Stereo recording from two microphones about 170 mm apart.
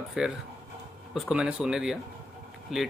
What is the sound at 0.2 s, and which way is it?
Speech, 5° right (ahead or behind).